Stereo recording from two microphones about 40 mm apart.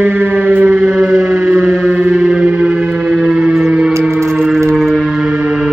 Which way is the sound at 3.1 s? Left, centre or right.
Centre.